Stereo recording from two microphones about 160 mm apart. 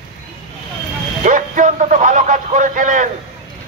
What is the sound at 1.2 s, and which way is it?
A man's voice, 55° right (ahead or behind).